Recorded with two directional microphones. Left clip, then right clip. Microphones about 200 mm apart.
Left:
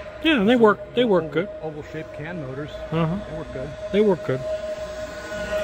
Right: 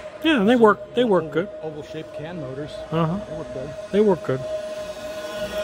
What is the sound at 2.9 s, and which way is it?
Speech, 5° right (ahead or behind).